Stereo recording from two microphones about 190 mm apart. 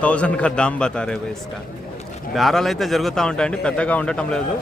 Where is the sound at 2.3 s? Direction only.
Centre (ahead or behind).